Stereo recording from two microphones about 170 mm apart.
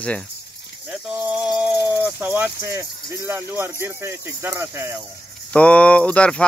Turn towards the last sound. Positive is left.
turn(degrees=5)  # may be behind; listen again after turning